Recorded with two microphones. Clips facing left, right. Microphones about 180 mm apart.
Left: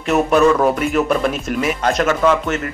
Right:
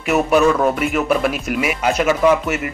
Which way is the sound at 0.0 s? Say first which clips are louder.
Left 1 dB; 5° right (ahead or behind).